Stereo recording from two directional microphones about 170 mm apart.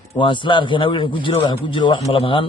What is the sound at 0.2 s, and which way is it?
A man's voice, 30° left (ahead or behind).